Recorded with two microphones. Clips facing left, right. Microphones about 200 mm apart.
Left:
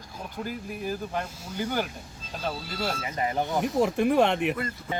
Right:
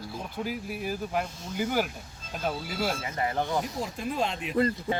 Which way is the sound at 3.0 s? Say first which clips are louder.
Left 1 dB; 20° left (ahead or behind).